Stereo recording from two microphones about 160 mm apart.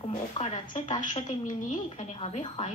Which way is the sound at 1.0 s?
50° left (ahead or behind).